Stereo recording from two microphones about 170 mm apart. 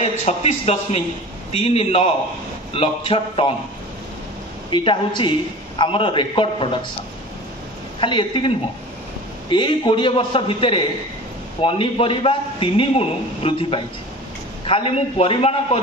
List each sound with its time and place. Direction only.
0.0 s a man's voice: 40° left (ahead or behind)
4.6 s a man's voice: 30° left (ahead or behind)
8.0 s a man's voice: 30° left (ahead or behind)